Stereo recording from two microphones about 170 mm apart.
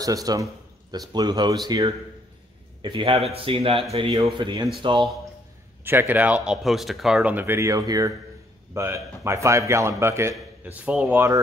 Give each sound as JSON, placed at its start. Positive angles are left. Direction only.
{"t": 0.0, "sound": "speech", "side_deg": -20}
{"t": 5.9, "sound": "speech", "side_deg": -10}